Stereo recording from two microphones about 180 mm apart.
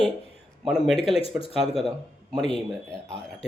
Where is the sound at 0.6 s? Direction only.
Centre (ahead or behind).